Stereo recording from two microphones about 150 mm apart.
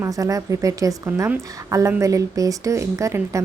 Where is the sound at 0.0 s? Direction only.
20° right (ahead or behind).